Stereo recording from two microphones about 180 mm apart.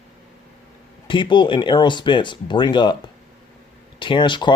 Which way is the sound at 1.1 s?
25° left (ahead or behind).